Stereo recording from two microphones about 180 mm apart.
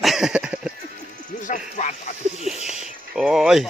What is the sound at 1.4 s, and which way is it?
Speech, 45° left (ahead or behind).